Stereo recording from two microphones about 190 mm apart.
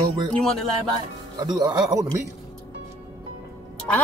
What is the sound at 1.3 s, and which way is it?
Speech, 20° right (ahead or behind).